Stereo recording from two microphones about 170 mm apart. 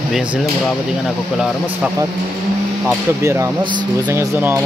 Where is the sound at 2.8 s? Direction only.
15° right (ahead or behind).